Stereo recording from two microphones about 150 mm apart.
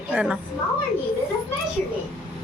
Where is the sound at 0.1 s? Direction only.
10° right (ahead or behind).